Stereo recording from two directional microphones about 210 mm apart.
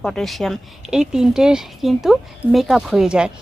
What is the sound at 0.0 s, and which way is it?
A woman's voice, centre (ahead or behind).